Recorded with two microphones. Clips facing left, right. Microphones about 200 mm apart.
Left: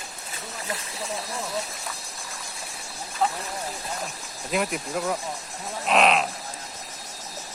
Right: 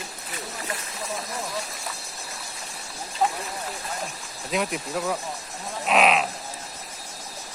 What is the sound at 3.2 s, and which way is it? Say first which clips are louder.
Speech: right 1 dB; 20° right (ahead or behind).